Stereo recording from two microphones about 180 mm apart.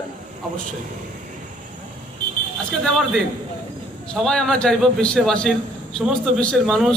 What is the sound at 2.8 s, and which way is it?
A man's voice, centre (ahead or behind).